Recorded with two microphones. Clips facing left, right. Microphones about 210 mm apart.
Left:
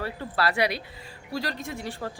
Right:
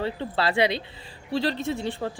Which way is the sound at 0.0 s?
25° right (ahead or behind).